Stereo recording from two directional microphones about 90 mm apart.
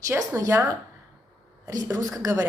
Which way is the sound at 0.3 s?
35° right (ahead or behind).